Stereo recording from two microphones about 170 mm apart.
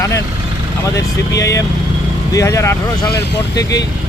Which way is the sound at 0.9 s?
20° left (ahead or behind).